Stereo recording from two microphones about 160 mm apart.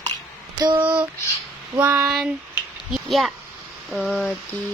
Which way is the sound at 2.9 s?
Centre (ahead or behind).